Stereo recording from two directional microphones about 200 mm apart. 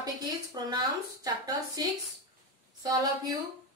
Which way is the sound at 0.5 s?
20° right (ahead or behind).